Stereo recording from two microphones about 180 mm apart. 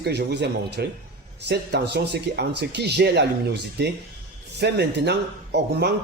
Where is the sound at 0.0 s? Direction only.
65° right (ahead or behind).